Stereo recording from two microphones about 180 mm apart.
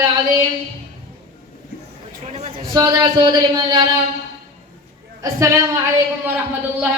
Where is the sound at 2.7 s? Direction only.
25° right (ahead or behind).